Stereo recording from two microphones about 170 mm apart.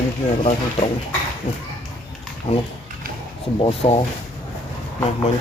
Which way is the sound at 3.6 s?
35° left (ahead or behind).